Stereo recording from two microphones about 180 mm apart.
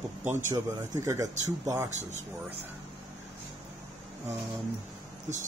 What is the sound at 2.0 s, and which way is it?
Speech, 40° right (ahead or behind).